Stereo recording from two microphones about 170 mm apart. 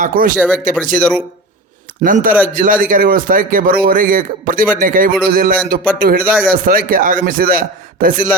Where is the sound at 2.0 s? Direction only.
50° right (ahead or behind).